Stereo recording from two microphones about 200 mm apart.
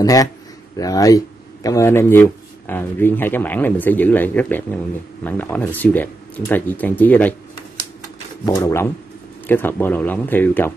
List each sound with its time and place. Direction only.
0.0 s speech: 20° left (ahead or behind)
8.5 s speech: 15° left (ahead or behind)